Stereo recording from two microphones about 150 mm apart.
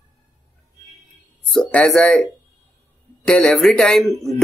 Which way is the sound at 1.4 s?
5° left (ahead or behind).